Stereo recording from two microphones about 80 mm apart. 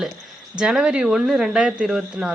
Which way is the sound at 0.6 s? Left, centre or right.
Centre.